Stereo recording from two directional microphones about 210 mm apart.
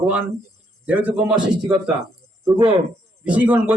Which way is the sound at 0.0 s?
5° right (ahead or behind).